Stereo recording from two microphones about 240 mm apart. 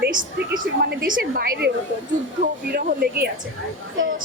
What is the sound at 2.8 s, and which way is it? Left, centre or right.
Speech, right.